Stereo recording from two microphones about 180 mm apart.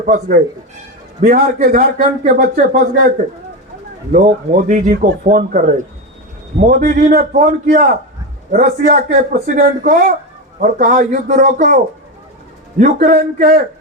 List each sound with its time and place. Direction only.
0.0 s a man's voice: 45° right (ahead or behind)
4.1 s a man's voice: 45° right (ahead or behind)
12.8 s a man's voice: 45° right (ahead or behind)